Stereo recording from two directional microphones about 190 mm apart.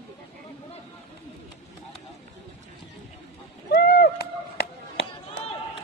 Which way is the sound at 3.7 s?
55° left (ahead or behind).